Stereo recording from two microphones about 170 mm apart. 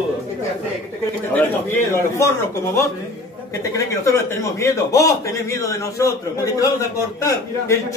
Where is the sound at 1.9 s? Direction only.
15° left (ahead or behind).